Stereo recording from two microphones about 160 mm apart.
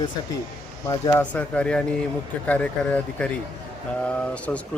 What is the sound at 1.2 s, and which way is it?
Speech, 10° left (ahead or behind).